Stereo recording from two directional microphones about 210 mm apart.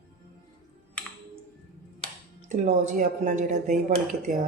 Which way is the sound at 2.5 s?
35° right (ahead or behind).